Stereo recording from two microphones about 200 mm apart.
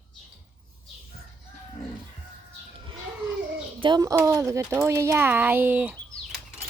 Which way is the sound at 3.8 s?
20° right (ahead or behind).